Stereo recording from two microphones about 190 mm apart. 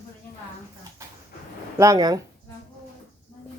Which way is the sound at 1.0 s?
15° right (ahead or behind).